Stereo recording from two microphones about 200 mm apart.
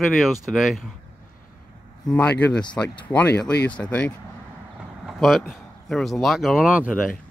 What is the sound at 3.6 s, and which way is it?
Speech, 5° left (ahead or behind).